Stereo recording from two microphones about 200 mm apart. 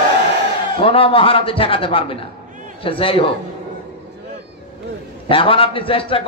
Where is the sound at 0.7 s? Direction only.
25° left (ahead or behind).